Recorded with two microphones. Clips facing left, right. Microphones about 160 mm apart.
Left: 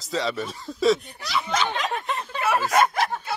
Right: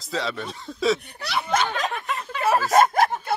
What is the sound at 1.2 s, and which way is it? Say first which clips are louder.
Speech: right 2 dB; 60° right (ahead or behind).